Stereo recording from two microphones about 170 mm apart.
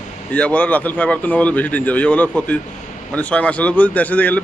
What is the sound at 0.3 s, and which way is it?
Speech, 10° left (ahead or behind).